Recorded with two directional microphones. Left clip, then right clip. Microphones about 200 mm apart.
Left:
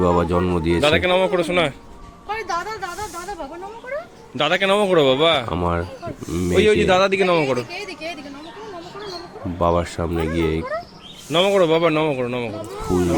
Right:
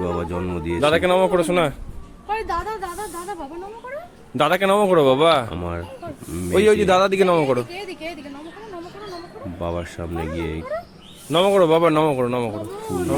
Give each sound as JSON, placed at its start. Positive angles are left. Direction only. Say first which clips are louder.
{"t": 0.0, "sound": "speech", "louder": "left 7 dB", "side_deg": 10}
{"t": 0.8, "sound": "speech", "louder": "right 1 dB", "side_deg": -15}
{"t": 2.2, "sound": "a sound", "louder": "right 1 dB", "side_deg": 10}
{"t": 4.4, "sound": "speech", "louder": "even", "side_deg": -25}
{"t": 5.5, "sound": "speech", "louder": "left 7 dB", "side_deg": 5}
{"t": 6.5, "sound": "speech", "louder": "even", "side_deg": -30}
{"t": 9.6, "sound": "speech", "louder": "left 9 dB", "side_deg": 10}
{"t": 11.3, "sound": "speech", "louder": "even", "side_deg": -15}